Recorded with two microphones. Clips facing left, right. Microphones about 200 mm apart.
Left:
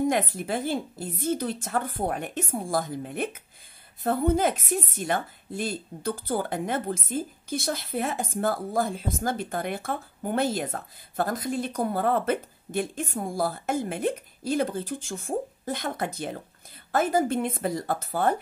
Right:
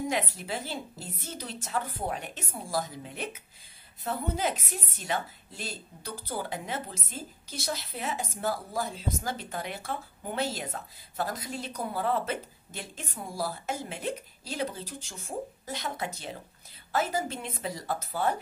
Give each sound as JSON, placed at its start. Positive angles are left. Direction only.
{"t": 0.0, "sound": "a woman's voice", "side_deg": 50}